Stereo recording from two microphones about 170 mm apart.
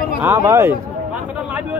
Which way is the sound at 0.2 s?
15° right (ahead or behind).